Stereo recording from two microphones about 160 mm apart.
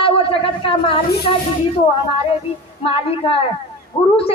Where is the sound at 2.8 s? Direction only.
35° left (ahead or behind).